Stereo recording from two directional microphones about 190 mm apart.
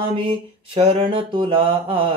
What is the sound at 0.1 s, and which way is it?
Mantra, 30° right (ahead or behind).